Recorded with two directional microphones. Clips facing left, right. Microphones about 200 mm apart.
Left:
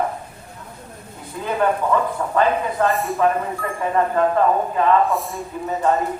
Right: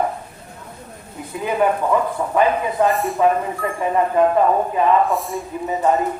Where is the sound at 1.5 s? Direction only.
15° right (ahead or behind).